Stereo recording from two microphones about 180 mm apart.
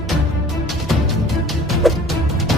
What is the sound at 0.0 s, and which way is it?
Music, centre (ahead or behind).